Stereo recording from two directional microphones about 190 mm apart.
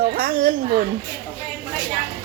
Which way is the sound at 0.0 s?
50° right (ahead or behind).